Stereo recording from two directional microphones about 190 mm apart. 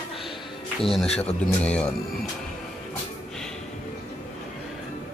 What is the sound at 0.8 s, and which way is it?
Speech, centre (ahead or behind).